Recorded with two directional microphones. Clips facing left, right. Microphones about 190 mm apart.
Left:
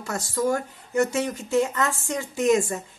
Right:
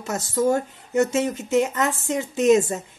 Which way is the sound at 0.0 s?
20° right (ahead or behind).